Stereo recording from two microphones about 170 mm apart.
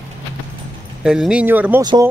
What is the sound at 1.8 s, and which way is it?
Speech, 20° right (ahead or behind).